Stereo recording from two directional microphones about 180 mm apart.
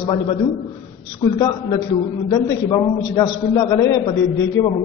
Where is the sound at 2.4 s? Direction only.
20° left (ahead or behind).